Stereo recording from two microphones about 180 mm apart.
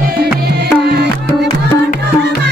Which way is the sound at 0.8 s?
65° right (ahead or behind).